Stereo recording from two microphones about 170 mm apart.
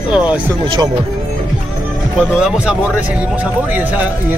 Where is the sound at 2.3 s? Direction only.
5° right (ahead or behind).